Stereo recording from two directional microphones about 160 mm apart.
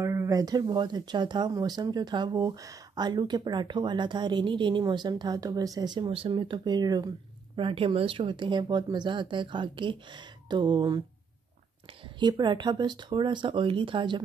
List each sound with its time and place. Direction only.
0.0 s speech: 15° right (ahead or behind)
12.2 s speech: 30° right (ahead or behind)